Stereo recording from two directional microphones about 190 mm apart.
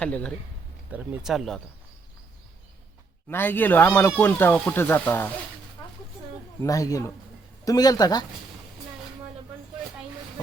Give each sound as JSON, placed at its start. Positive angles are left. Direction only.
{"t": 0.0, "sound": "speech", "side_deg": 5}
{"t": 0.9, "sound": "speech", "side_deg": -5}
{"t": 3.2, "sound": "speech", "side_deg": 10}
{"t": 6.6, "sound": "speech", "side_deg": 20}